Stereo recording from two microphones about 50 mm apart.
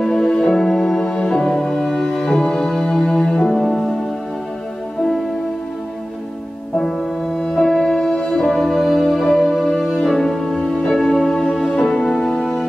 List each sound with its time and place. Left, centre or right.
0.0 s music: centre
7.3 s music: centre